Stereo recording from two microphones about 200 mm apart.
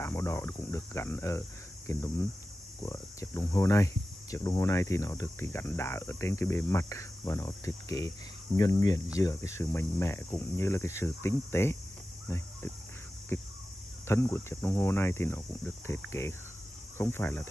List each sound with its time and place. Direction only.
0.0 s speech: 15° left (ahead or behind)
13.3 s speech: 15° left (ahead or behind)